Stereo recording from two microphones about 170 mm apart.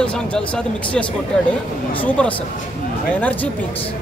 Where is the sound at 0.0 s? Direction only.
5° left (ahead or behind).